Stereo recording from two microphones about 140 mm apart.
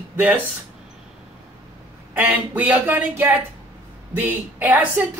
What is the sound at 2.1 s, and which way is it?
Speech, 10° right (ahead or behind).